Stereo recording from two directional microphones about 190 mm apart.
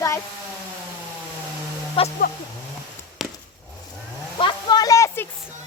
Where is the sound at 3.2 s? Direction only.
Centre (ahead or behind).